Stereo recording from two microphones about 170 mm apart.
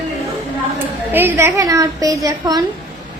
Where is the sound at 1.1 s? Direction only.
10° right (ahead or behind).